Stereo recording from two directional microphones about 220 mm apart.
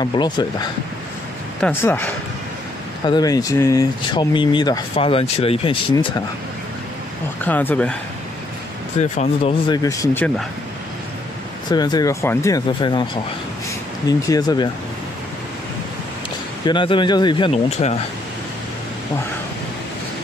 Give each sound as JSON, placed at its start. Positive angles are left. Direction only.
{"t": 0.0, "sound": "speech", "side_deg": 20}
{"t": 7.4, "sound": "speech", "side_deg": 5}
{"t": 9.1, "sound": "speech", "side_deg": 30}
{"t": 9.7, "sound": "speech", "side_deg": 10}
{"t": 11.7, "sound": "speech", "side_deg": 20}
{"t": 16.6, "sound": "speech", "side_deg": 20}